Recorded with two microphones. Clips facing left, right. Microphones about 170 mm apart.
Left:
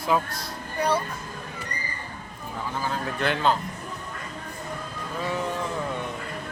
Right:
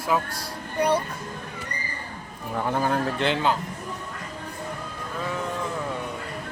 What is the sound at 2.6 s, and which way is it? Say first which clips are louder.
Speech: right 6 dB; 55° right (ahead or behind).